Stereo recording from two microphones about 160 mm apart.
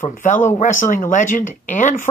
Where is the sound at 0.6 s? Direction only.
55° left (ahead or behind).